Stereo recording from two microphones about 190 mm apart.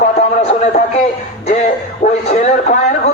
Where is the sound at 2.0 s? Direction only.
35° left (ahead or behind).